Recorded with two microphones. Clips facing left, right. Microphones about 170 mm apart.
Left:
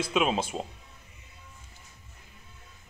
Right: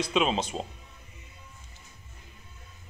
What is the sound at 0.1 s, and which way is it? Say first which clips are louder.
Speech: left 1 dB; 5° left (ahead or behind).